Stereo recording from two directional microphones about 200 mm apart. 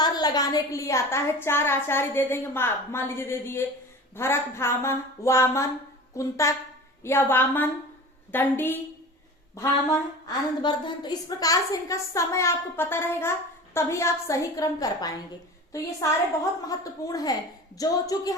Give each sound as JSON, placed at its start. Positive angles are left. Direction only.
{"t": 0.0, "sound": "a woman's voice", "side_deg": 20}